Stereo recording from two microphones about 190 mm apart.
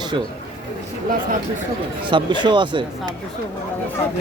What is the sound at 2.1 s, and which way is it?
A man's voice, 25° right (ahead or behind).